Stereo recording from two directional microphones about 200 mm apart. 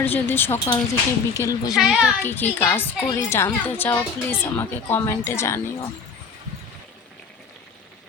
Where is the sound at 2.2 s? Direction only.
10° left (ahead or behind).